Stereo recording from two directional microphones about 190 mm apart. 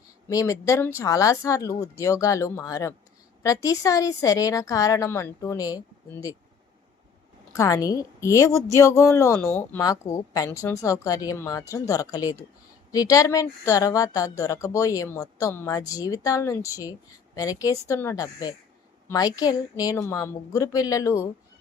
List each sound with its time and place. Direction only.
0.3 s a woman's voice: 15° left (ahead or behind)
7.5 s a woman's voice: 15° left (ahead or behind)